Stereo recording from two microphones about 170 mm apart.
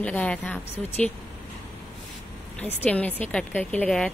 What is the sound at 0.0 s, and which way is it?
A woman's voice, 10° left (ahead or behind).